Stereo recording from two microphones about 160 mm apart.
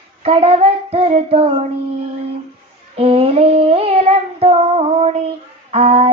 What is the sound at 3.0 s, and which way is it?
Child singing, 35° right (ahead or behind).